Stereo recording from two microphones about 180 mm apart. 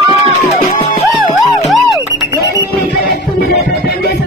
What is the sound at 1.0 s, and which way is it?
Music, centre (ahead or behind).